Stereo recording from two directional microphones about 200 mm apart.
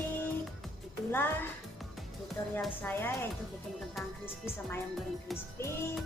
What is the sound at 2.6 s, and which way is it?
Speech, 10° left (ahead or behind).